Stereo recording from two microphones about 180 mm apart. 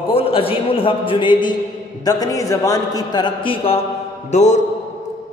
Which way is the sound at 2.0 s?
20° left (ahead or behind).